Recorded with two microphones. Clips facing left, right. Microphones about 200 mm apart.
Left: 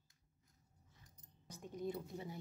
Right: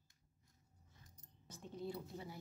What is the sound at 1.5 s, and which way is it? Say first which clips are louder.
Speech: left 3 dB; 15° left (ahead or behind).